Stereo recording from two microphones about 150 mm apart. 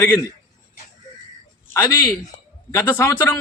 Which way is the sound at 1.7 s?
20° left (ahead or behind).